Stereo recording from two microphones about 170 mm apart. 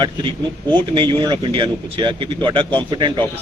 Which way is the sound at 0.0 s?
25° right (ahead or behind).